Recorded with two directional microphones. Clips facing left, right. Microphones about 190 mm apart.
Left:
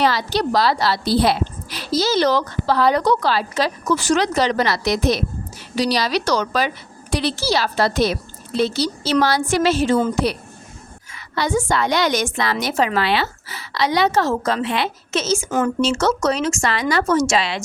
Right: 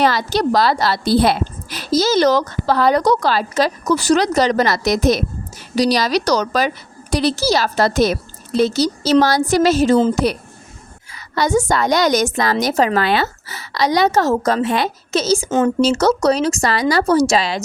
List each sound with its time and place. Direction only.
0.0 s a woman's voice: 45° right (ahead or behind)
11.1 s a woman's voice: 45° right (ahead or behind)
15.4 s speech: 25° right (ahead or behind)
15.8 s a woman's voice: 40° right (ahead or behind)